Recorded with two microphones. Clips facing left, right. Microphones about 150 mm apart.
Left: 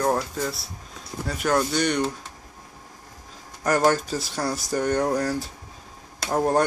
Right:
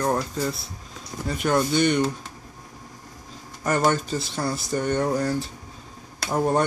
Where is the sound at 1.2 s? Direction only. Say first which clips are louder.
Right 1 dB; centre (ahead or behind).